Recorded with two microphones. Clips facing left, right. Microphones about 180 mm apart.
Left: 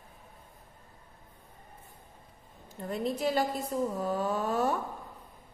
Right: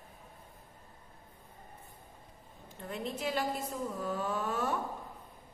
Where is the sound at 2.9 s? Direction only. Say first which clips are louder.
Left 6 dB; 35° left (ahead or behind).